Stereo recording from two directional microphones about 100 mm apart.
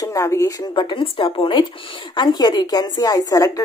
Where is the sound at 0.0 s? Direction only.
35° left (ahead or behind).